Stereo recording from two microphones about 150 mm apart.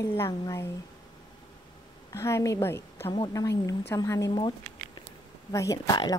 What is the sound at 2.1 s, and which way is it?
A woman's voice, 20° left (ahead or behind).